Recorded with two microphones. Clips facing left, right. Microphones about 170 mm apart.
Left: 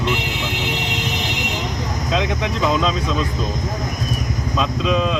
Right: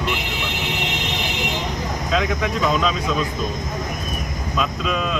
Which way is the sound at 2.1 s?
20° left (ahead or behind).